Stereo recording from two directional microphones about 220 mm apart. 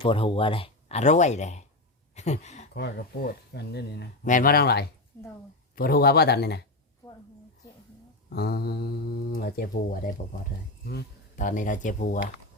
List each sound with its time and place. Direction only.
0.0 s speech: 25° left (ahead or behind)
2.7 s speech: 45° left (ahead or behind)
7.0 s a sound: 10° left (ahead or behind)
8.3 s speech: 45° left (ahead or behind)